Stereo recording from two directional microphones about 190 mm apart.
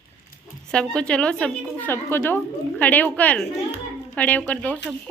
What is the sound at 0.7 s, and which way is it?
A woman's voice, 5° left (ahead or behind).